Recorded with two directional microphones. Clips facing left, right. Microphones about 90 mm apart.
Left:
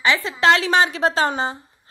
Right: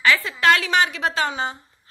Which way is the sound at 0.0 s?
20° left (ahead or behind).